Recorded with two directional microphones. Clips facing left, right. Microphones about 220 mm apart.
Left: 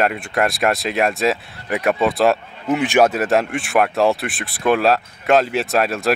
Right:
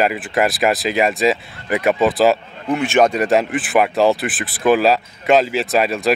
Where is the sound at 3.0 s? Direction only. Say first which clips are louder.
Right 2 dB; 5° left (ahead or behind).